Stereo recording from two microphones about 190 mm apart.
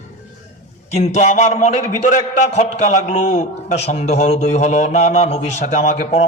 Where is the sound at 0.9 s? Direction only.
35° left (ahead or behind).